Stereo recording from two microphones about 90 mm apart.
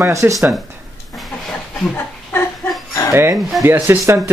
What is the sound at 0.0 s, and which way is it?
Speech, 35° right (ahead or behind).